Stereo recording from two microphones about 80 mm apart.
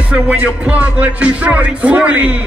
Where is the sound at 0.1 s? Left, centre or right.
Centre.